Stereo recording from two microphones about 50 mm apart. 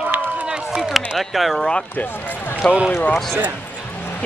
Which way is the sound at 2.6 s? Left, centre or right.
Centre.